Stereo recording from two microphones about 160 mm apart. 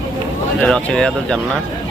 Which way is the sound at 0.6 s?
5° left (ahead or behind).